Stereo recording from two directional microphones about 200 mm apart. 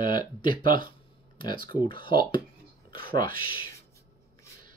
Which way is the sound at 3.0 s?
45° right (ahead or behind).